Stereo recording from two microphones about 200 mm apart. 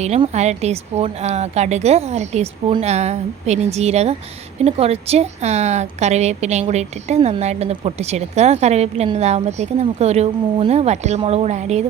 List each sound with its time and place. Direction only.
0.0 s speech: 35° right (ahead or behind)